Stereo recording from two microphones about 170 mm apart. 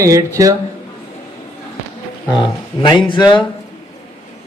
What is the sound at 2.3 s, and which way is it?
Speech, 25° left (ahead or behind).